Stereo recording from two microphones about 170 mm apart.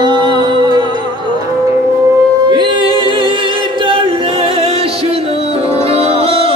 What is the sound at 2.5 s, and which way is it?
Music, 25° right (ahead or behind).